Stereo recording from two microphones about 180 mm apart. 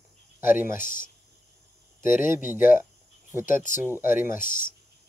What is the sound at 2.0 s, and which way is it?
Speech, 50° left (ahead or behind).